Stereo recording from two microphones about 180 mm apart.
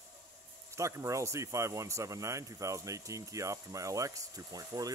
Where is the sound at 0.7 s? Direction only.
15° right (ahead or behind).